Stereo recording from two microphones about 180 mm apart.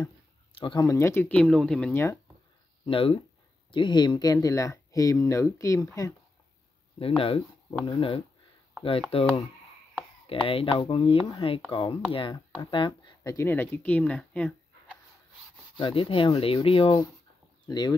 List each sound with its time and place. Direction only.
0.6 s speech: 25° left (ahead or behind)
2.8 s speech: 30° left (ahead or behind)
7.0 s speech: 30° left (ahead or behind); by 15.0 s 5° left (ahead or behind)
15.8 s speech: 30° left (ahead or behind)